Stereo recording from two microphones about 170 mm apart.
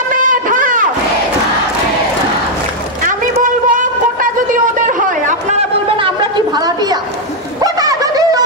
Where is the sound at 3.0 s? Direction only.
50° right (ahead or behind).